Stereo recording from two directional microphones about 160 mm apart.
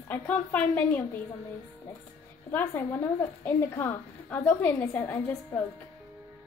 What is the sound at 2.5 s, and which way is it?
A woman's voice, 10° left (ahead or behind).